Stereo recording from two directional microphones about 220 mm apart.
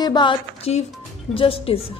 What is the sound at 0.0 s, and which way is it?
A woman's voice, 20° left (ahead or behind).